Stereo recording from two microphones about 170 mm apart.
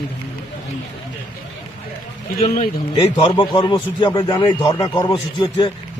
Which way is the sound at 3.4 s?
30° left (ahead or behind).